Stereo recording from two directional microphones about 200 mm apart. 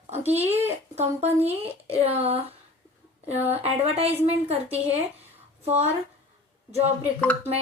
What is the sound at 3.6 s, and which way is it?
Speech, 30° right (ahead or behind).